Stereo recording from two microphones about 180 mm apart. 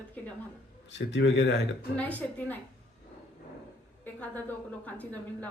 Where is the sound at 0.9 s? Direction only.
80° left.